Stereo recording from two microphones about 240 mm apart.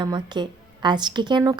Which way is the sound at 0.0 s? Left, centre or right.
Centre.